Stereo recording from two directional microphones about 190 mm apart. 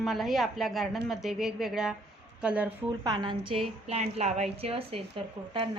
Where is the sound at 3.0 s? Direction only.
20° right (ahead or behind).